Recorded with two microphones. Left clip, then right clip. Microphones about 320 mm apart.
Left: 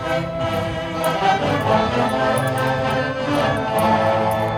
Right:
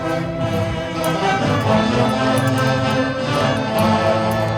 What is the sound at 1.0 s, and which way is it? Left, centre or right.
Music, left.